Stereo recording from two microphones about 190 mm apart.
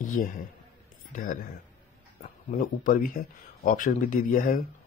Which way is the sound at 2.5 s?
45° left (ahead or behind).